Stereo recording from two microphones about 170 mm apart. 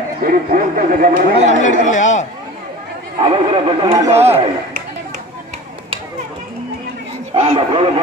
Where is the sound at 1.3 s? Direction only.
45° left (ahead or behind).